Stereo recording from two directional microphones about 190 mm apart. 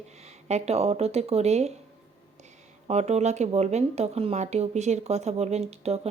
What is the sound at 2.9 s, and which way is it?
Speech, 35° right (ahead or behind).